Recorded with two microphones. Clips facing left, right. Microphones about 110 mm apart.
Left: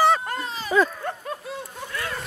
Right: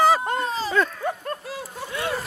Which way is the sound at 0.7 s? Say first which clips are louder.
Left 5 dB; 5° left (ahead or behind).